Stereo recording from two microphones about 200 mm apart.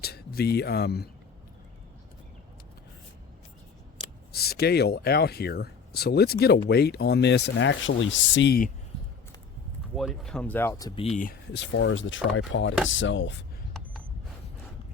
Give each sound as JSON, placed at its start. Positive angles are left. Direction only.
{"t": 0.0, "sound": "speech", "side_deg": 50}
{"t": 4.3, "sound": "speech", "side_deg": 50}
{"t": 9.9, "sound": "speech", "side_deg": 0}
{"t": 11.0, "sound": "speech", "side_deg": 40}
{"t": 11.5, "sound": "speech", "side_deg": 65}